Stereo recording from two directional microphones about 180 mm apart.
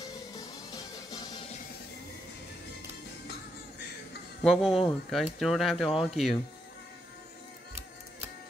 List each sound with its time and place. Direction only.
0.0 s music: 20° left (ahead or behind)
4.4 s speech: centre (ahead or behind)